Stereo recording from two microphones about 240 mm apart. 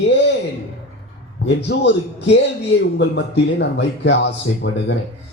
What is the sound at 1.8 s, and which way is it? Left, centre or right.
Speech, left.